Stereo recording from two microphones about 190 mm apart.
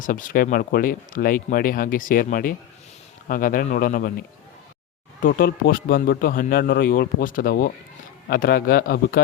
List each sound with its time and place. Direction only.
0.0 s speech: 45° left (ahead or behind)
5.2 s speech: 50° left (ahead or behind)